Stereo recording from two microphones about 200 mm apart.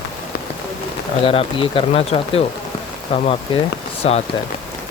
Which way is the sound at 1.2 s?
30° left (ahead or behind).